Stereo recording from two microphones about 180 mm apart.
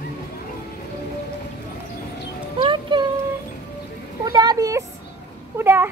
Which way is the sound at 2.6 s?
25° right (ahead or behind).